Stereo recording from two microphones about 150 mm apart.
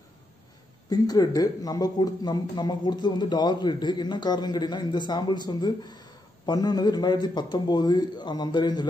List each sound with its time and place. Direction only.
0.8 s speech: 25° left (ahead or behind)